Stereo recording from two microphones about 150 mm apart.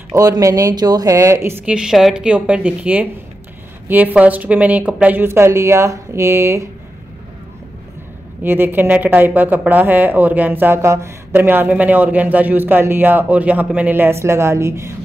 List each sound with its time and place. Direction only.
0.1 s speech: 20° right (ahead or behind)
1.8 s speech: centre (ahead or behind); by 6.7 s 20° right (ahead or behind)
8.5 s speech: 15° right (ahead or behind)